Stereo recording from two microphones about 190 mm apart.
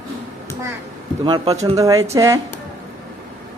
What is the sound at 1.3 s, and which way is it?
A child's voice, 25° right (ahead or behind).